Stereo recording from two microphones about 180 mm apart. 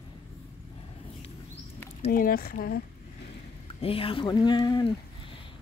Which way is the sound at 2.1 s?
55° left (ahead or behind).